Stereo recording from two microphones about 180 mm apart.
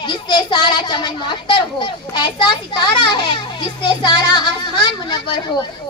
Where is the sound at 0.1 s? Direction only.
25° left (ahead or behind).